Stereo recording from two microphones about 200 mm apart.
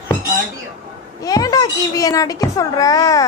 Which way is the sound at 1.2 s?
20° left (ahead or behind).